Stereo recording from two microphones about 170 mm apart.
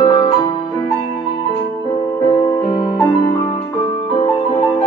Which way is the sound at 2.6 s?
25° left (ahead or behind).